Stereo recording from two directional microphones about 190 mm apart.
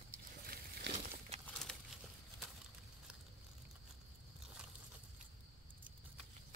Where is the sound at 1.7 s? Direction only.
5° left (ahead or behind).